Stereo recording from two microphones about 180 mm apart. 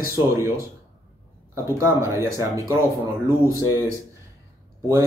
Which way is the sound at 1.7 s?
15° right (ahead or behind).